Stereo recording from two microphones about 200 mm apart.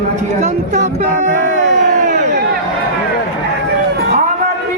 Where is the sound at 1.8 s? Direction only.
40° right (ahead or behind).